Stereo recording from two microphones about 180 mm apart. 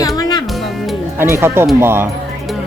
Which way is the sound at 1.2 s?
15° right (ahead or behind).